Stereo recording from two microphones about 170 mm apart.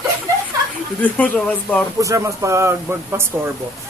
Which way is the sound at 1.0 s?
10° left (ahead or behind).